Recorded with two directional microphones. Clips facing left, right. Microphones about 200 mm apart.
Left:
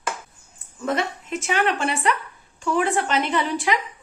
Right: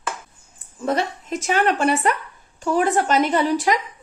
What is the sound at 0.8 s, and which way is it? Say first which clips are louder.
A woman's voice: right 2 dB; 35° right (ahead or behind).